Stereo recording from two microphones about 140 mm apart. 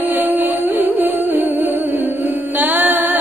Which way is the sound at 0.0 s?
15° right (ahead or behind).